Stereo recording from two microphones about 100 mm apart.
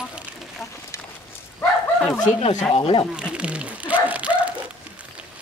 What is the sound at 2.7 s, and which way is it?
Speech, 70° left (ahead or behind).